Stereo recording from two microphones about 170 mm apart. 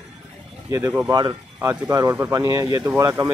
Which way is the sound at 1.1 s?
25° right (ahead or behind).